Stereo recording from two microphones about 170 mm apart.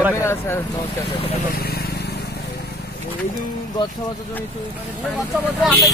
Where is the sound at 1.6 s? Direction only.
65° left (ahead or behind).